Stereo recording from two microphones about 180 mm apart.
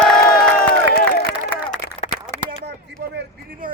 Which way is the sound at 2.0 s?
35° left (ahead or behind).